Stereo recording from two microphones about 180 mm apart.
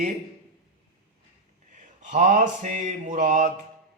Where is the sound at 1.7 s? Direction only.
45° right (ahead or behind).